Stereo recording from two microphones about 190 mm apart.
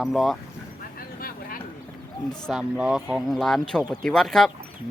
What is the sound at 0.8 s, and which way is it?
Vehicle, 50° left (ahead or behind).